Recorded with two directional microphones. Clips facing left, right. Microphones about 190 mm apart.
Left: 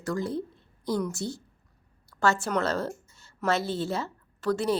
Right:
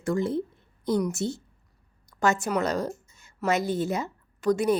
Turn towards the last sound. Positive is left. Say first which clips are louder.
# right 3 dB
turn(degrees=-15)  # may be behind; listen again after turning